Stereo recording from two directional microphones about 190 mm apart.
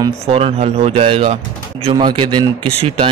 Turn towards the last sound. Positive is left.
turn(degrees=-25)  # may be behind; listen again after turning